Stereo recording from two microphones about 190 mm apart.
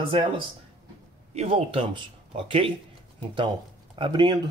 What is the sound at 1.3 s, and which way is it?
Speech, 30° right (ahead or behind).